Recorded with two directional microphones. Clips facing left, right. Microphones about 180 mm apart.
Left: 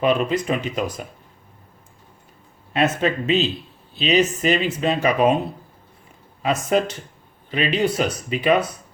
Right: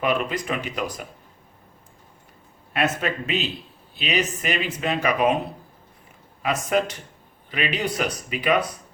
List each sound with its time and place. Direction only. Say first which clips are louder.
0.0 s speech: left 5 dB; 25° left (ahead or behind)
2.7 s speech: left 4 dB; 25° left (ahead or behind)
6.4 s speech: left 3 dB; 30° left (ahead or behind)